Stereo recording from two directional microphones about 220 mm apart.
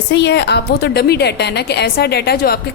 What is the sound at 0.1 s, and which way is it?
A woman's voice, 50° left (ahead or behind).